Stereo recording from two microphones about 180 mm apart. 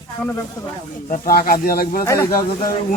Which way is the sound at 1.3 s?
55° left (ahead or behind).